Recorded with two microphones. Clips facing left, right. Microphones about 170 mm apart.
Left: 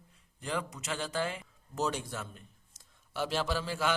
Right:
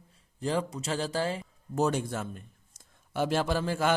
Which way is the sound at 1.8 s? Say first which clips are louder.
Right 6 dB; 50° right (ahead or behind).